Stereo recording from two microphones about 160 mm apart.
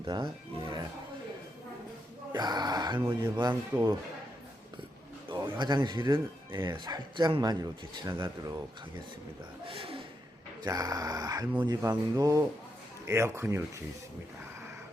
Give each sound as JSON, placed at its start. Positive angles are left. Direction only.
{"t": 0.0, "sound": "speech", "side_deg": -30}
{"t": 2.3, "sound": "speech", "side_deg": -25}
{"t": 5.3, "sound": "speech", "side_deg": -25}
{"t": 9.6, "sound": "a sound", "side_deg": -35}
{"t": 10.6, "sound": "speech", "side_deg": -25}